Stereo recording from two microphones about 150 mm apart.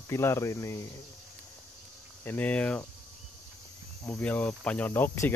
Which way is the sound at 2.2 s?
10° left (ahead or behind).